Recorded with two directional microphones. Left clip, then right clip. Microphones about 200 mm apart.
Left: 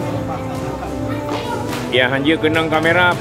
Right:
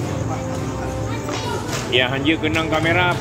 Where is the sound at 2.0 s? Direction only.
10° left (ahead or behind).